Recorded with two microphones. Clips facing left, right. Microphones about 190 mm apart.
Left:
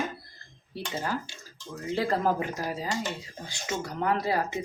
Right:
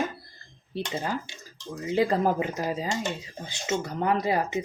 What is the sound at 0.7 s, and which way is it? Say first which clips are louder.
Speech: right 2 dB; 20° right (ahead or behind).